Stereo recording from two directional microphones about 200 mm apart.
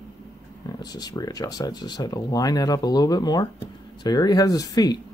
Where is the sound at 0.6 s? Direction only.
20° left (ahead or behind).